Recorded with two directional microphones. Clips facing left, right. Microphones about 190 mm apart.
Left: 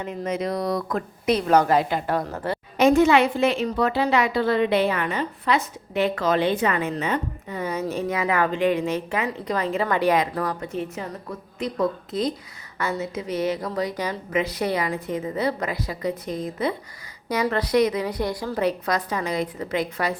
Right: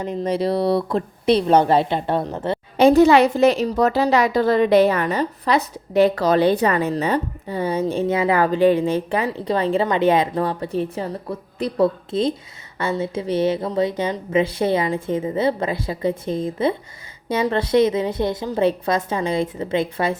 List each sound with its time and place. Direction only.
0.0 s a woman's voice: 35° right (ahead or behind)